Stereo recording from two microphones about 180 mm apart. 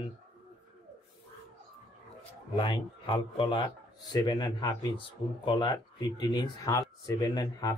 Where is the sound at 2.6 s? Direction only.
30° left (ahead or behind).